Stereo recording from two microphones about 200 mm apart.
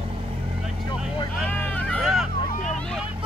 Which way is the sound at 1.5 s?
10° left (ahead or behind).